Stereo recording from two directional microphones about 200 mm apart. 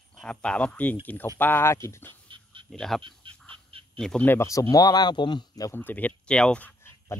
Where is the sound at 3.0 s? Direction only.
25° right (ahead or behind).